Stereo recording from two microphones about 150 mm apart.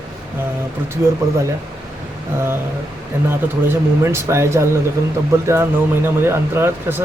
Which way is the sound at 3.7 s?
15° right (ahead or behind).